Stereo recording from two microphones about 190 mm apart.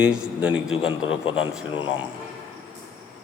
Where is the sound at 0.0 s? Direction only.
5° right (ahead or behind).